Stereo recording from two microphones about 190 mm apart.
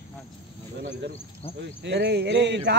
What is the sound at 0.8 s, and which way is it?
Speech, 55° right (ahead or behind).